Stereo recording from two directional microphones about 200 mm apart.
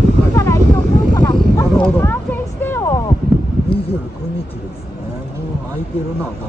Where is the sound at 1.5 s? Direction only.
25° left (ahead or behind).